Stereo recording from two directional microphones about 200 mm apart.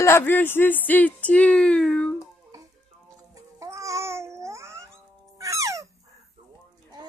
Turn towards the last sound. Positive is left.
turn(degrees=-15)  # may be behind; listen again after turning